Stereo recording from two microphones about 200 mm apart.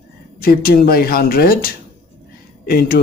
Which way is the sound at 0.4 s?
50° left (ahead or behind).